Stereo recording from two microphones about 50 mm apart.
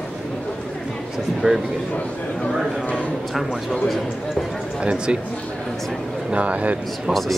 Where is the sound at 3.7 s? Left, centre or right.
Centre.